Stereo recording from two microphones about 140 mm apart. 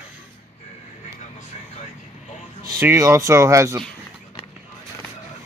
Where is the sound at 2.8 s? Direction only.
20° right (ahead or behind).